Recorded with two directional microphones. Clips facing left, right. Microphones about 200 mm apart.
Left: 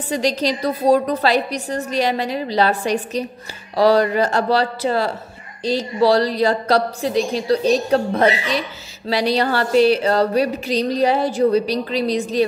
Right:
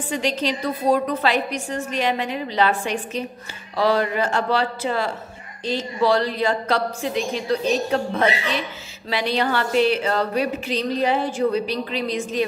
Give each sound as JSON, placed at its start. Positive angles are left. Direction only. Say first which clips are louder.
{"t": 0.1, "sound": "speech", "louder": "left 4 dB", "side_deg": 40}